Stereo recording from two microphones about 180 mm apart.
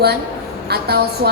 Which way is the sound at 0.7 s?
60° right (ahead or behind).